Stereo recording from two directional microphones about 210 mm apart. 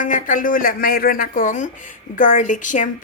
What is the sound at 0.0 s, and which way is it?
Speech, 40° left (ahead or behind).